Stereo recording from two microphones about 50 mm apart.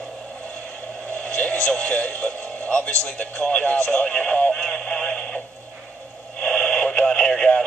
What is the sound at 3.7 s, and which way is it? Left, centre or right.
Speech, centre.